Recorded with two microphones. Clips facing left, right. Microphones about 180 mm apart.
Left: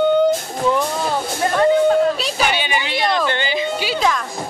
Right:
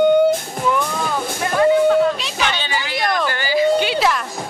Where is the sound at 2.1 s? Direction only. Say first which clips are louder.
Left 4 dB; 35° left (ahead or behind).